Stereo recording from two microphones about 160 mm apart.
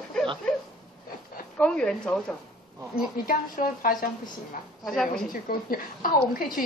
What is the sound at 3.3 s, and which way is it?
Speech, 60° left (ahead or behind).